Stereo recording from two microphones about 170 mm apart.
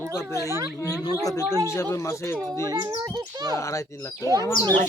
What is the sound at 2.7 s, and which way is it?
Speech, 20° right (ahead or behind).